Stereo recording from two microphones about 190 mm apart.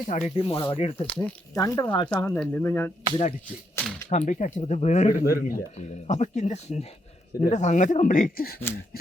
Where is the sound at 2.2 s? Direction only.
10° left (ahead or behind).